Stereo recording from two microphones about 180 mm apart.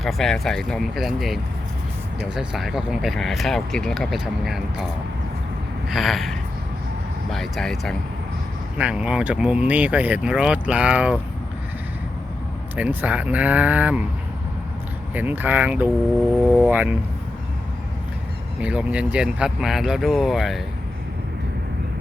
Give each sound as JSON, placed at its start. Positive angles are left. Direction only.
{"t": 0.0, "sound": "speech", "side_deg": 0}
{"t": 5.9, "sound": "speech", "side_deg": 0}
{"t": 12.7, "sound": "speech", "side_deg": -10}
{"t": 15.1, "sound": "speech", "side_deg": -10}
{"t": 18.6, "sound": "speech", "side_deg": -5}